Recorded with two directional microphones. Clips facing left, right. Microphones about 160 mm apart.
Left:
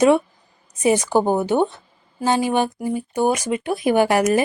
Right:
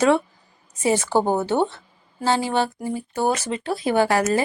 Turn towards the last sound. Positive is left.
turn(degrees=15)  # may be behind; listen again after turning